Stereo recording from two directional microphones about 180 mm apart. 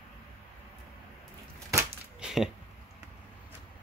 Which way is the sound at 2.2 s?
Centre (ahead or behind).